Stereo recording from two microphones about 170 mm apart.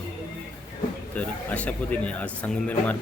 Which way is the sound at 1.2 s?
10° left (ahead or behind).